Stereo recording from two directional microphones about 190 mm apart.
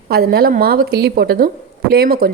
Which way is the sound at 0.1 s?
55° right (ahead or behind).